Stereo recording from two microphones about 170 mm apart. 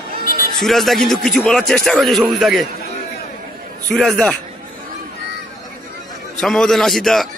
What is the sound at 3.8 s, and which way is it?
Speech, 5° left (ahead or behind).